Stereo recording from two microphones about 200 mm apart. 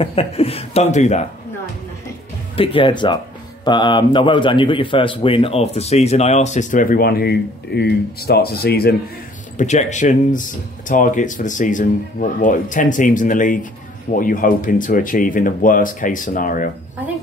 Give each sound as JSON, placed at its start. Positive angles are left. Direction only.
{"t": 0.0, "sound": "a man's voice", "side_deg": 30}
{"t": 2.5, "sound": "a man's voice", "side_deg": 25}
{"t": 9.6, "sound": "a man's voice", "side_deg": 35}